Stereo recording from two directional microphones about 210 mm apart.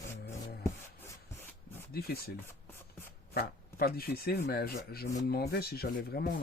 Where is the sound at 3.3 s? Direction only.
45° left (ahead or behind).